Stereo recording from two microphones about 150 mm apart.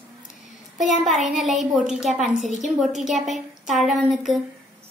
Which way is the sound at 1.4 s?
Centre (ahead or behind).